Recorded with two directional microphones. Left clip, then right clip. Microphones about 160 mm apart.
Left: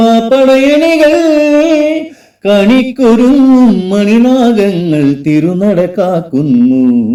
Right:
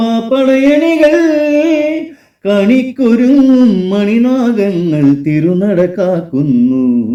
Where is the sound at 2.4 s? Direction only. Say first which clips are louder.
Left 3 dB; 40° left (ahead or behind).